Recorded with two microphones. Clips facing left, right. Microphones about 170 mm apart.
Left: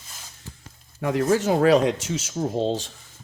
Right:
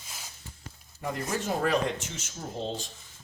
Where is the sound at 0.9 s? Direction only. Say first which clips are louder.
Left 11 dB; 90° left.